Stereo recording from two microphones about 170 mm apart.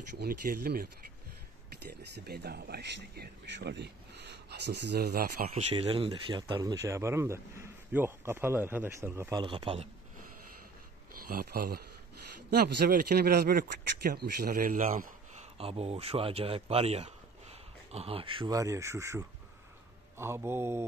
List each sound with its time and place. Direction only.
0.2 s speech: 60° right (ahead or behind)
2.1 s speech: 65° right (ahead or behind)
5.5 s speech: 40° right (ahead or behind); by 9.4 s 15° right (ahead or behind)
9.4 s speech: 30° right (ahead or behind)
11.1 s speech: 60° right (ahead or behind)
12.4 s speech: 75° right (ahead or behind); by 15.4 s 45° right (ahead or behind)
15.5 s speech: 35° right (ahead or behind)
18.6 s speech: 20° right (ahead or behind)